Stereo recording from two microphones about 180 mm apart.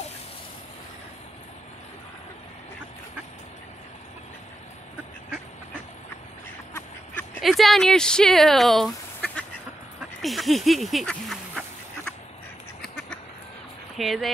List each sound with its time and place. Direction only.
7.3 s speech: centre (ahead or behind)
13.9 s speech: centre (ahead or behind)